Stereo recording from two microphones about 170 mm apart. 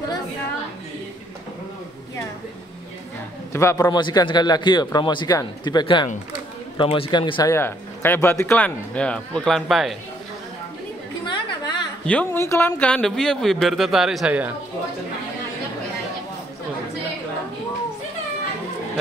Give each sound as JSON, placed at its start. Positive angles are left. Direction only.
{"t": 3.5, "sound": "a man's voice", "side_deg": 20}
{"t": 7.5, "sound": "speech", "side_deg": 15}
{"t": 11.2, "sound": "chatter", "side_deg": 25}
{"t": 12.1, "sound": "speech", "side_deg": 10}